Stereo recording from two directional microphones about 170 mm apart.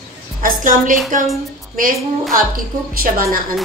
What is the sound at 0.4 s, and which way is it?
Speech, 50° right (ahead or behind).